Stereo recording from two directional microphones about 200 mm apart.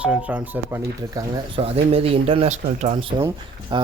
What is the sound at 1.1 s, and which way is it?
Speech, 30° right (ahead or behind).